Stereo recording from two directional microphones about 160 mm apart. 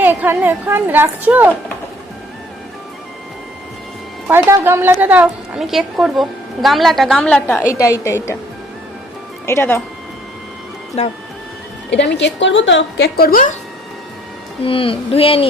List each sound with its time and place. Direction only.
0.0 s a woman's voice: 10° right (ahead or behind)
4.3 s a woman's voice: 15° right (ahead or behind); by 7.6 s 5° left (ahead or behind)
7.6 s a woman's voice: 20° left (ahead or behind)
9.5 s speech: 15° left (ahead or behind)
11.0 s speech: 40° left (ahead or behind)
11.9 s a woman's voice: 90° left
13.0 s a woman's voice: 70° left (ahead or behind)
14.6 s speech: 35° left (ahead or behind)